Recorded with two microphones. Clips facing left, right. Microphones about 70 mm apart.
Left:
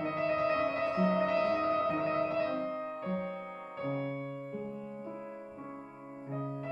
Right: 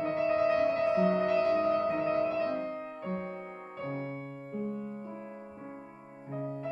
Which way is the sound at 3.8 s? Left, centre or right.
Centre.